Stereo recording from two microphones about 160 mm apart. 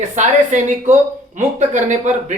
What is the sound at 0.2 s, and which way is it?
A man's voice, 50° right (ahead or behind).